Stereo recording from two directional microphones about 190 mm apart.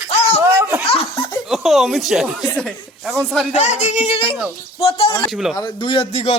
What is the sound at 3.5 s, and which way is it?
A man's voice, 40° left (ahead or behind).